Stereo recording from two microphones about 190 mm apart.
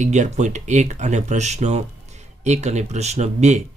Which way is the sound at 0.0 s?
40° right (ahead or behind).